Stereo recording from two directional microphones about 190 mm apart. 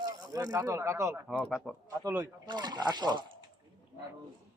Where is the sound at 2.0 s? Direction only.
15° right (ahead or behind).